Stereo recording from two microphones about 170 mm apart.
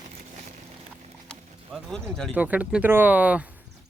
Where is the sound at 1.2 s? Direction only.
Centre (ahead or behind).